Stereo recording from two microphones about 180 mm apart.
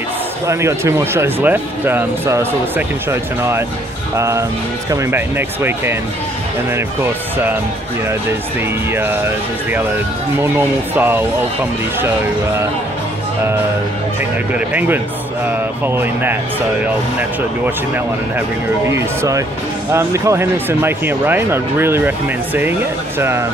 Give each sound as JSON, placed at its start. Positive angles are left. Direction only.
{"t": 0.5, "sound": "speech", "side_deg": -15}
{"t": 8.9, "sound": "speech", "side_deg": -10}
{"t": 14.5, "sound": "speech", "side_deg": -10}